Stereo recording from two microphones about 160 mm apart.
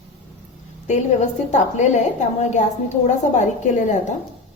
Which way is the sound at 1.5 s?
50° left (ahead or behind).